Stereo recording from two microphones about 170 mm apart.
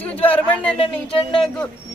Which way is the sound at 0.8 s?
30° left (ahead or behind).